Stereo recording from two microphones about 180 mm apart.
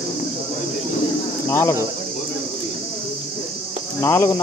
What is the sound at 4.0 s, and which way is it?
Speech, 15° left (ahead or behind).